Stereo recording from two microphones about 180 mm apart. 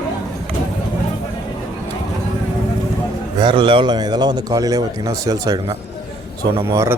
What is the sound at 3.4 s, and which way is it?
A man's voice, 30° right (ahead or behind).